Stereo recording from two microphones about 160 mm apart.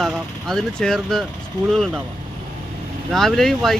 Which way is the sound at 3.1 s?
Centre (ahead or behind).